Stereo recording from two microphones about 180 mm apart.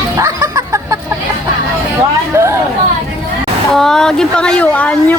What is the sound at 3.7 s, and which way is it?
Speech, 5° left (ahead or behind).